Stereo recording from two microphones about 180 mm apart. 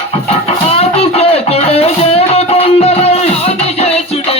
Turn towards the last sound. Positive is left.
turn(degrees=35)  # may be behind; listen again after turning